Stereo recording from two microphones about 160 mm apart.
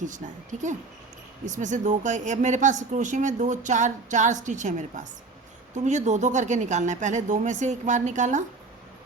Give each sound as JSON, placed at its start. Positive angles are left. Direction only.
{"t": 0.5, "sound": "speech", "side_deg": -50}